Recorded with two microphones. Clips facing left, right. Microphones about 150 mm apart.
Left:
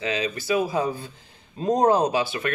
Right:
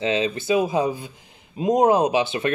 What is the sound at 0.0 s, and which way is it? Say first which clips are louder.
Speech: right 4 dB; 25° right (ahead or behind).